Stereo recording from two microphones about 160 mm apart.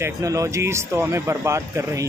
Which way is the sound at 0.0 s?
20° right (ahead or behind).